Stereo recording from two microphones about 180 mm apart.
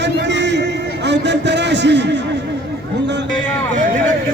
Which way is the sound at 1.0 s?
75° right (ahead or behind).